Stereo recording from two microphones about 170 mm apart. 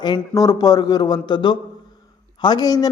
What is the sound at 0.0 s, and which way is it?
A man's voice, 25° left (ahead or behind).